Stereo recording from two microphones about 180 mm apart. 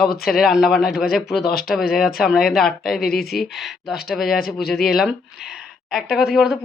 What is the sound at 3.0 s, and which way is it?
Speech, 60° left (ahead or behind).